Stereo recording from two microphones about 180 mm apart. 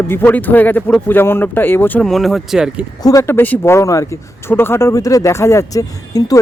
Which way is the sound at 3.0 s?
20° left (ahead or behind).